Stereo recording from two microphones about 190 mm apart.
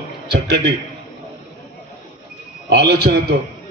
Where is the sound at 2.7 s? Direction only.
60° right (ahead or behind).